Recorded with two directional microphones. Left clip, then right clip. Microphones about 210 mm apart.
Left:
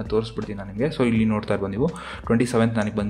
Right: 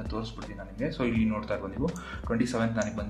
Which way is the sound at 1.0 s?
45° left (ahead or behind).